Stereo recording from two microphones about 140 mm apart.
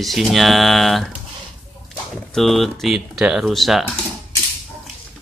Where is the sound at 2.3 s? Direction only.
Centre (ahead or behind).